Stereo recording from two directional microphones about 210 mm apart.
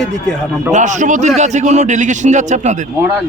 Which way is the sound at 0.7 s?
35° right (ahead or behind).